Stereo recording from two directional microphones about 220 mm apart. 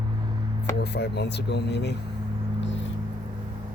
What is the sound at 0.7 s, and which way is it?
Speech, 50° left (ahead or behind).